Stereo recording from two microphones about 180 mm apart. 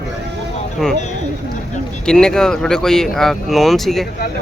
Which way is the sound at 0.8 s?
Centre (ahead or behind).